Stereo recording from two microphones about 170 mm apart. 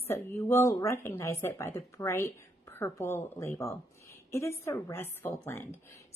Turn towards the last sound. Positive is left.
turn(degrees=15)  # may be behind; listen again after turning